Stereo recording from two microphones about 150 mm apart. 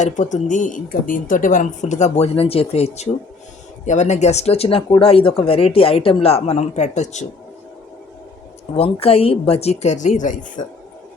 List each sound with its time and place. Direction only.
0.0 s speech: 55° left (ahead or behind)
8.7 s speech: 40° left (ahead or behind); by 10.7 s 55° left (ahead or behind)